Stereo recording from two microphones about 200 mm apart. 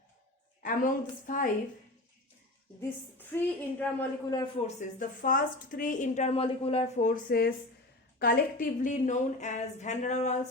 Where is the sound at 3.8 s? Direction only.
10° left (ahead or behind).